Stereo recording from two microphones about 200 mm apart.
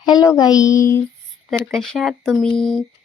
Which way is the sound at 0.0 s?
20° left (ahead or behind).